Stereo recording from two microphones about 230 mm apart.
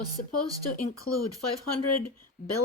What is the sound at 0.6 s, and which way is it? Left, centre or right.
Speech, left.